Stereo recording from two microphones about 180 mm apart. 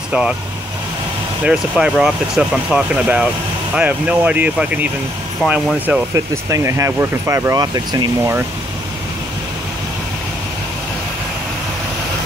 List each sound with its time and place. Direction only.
1.4 s speech: 5° right (ahead or behind)
5.9 s speech: 15° right (ahead or behind)